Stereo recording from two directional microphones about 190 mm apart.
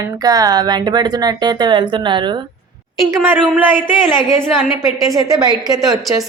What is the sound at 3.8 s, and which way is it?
Speech, centre (ahead or behind).